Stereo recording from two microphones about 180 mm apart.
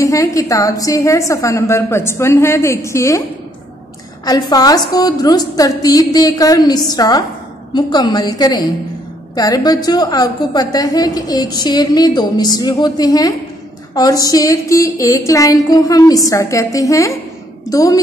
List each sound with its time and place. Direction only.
0.0 s a woman's voice: 20° left (ahead or behind)
4.2 s a woman's voice: 20° left (ahead or behind)